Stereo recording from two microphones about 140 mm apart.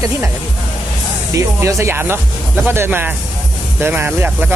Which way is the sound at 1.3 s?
20° right (ahead or behind).